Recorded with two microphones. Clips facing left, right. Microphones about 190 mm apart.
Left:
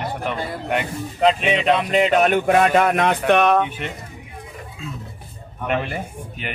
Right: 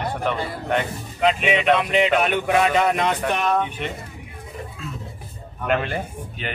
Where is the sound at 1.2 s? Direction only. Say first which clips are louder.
Left 2 dB; 35° left (ahead or behind); by 3.6 s 70° left (ahead or behind).